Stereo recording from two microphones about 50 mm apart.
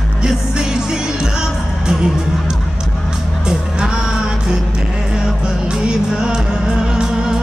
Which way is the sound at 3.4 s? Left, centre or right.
Centre.